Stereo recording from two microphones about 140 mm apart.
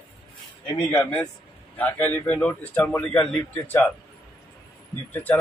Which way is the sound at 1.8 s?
10° left (ahead or behind).